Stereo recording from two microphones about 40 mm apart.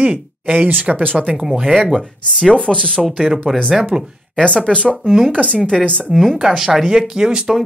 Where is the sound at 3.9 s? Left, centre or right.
Right.